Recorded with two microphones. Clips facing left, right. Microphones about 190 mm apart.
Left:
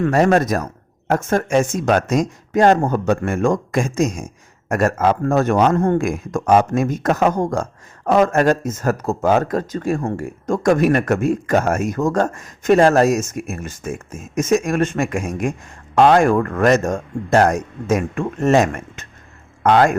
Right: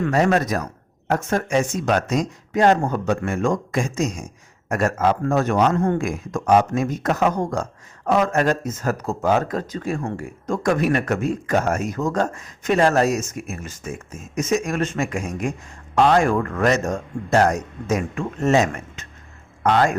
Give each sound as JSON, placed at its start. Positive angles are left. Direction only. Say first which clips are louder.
{"t": 0.0, "sound": "speech", "louder": "left 4 dB", "side_deg": 50}